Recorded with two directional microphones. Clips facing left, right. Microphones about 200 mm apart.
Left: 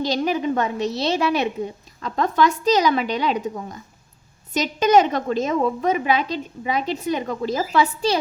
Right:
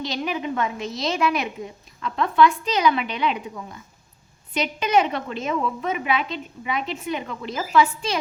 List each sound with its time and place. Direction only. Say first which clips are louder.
0.0 s a woman's voice: left 5 dB; 35° left (ahead or behind)